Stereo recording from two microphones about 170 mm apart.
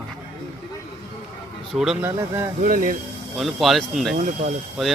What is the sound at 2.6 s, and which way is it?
Speech, 55° right (ahead or behind).